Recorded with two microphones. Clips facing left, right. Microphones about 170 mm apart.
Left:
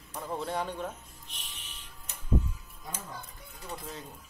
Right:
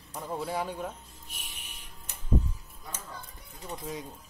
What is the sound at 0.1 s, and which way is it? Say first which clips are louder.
Speech: right 1 dB; 5° right (ahead or behind).